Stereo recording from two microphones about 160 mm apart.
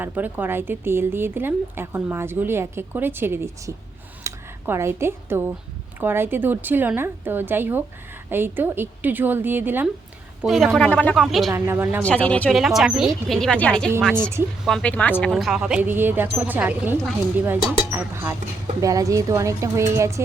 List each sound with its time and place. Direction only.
0.0 s a woman's voice: 10° right (ahead or behind)
10.4 s speech: centre (ahead or behind)
11.5 s a woman's voice: 15° right (ahead or behind)
12.0 s a woman's voice: 10° left (ahead or behind); by 20.2 s 20° right (ahead or behind)